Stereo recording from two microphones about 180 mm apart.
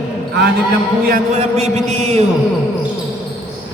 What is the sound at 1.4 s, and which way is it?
Speech, 35° right (ahead or behind).